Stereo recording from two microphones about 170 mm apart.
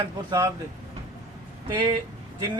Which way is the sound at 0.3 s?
20° right (ahead or behind).